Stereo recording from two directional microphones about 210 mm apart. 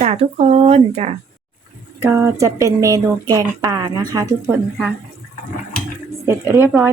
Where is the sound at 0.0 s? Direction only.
30° right (ahead or behind).